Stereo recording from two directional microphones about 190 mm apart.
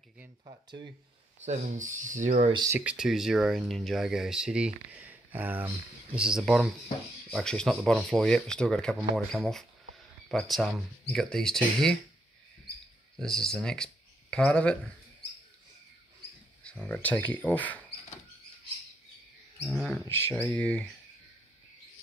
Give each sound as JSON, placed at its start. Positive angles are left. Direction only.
{"t": 0.5, "sound": "speech", "side_deg": -25}
{"t": 1.4, "sound": "speech", "side_deg": -40}
{"t": 2.5, "sound": "speech", "side_deg": -20}
{"t": 2.8, "sound": "speech", "side_deg": -5}
{"t": 13.2, "sound": "speech", "side_deg": 5}
{"t": 16.6, "sound": "speech", "side_deg": 5}
{"t": 19.6, "sound": "speech", "side_deg": 5}